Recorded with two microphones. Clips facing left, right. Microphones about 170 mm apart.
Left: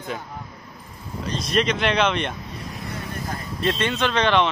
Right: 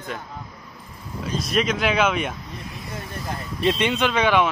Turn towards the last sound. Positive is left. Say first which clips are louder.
# even
turn(degrees=-10)  # may be behind; listen again after turning